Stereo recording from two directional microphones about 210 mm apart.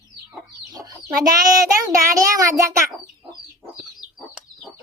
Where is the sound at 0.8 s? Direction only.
15° right (ahead or behind).